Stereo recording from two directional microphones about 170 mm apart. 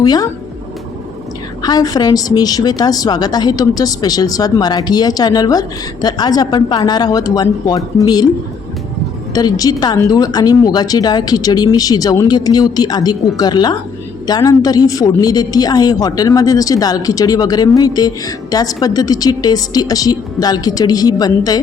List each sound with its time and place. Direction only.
0.0 s speech: 20° left (ahead or behind)
1.6 s speech: 20° left (ahead or behind)
9.3 s speech: 20° left (ahead or behind)